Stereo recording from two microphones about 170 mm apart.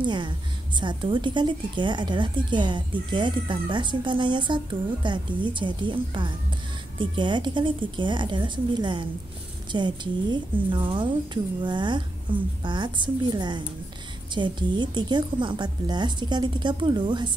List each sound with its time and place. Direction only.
0.0 s a woman's voice: 25° right (ahead or behind)